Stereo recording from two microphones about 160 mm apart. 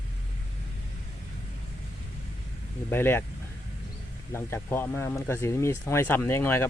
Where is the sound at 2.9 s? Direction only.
15° left (ahead or behind).